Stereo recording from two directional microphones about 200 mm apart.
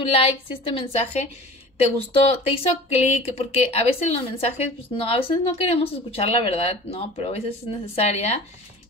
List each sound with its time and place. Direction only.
0.0 s speech: 30° left (ahead or behind)
2.1 s speech: 30° left (ahead or behind)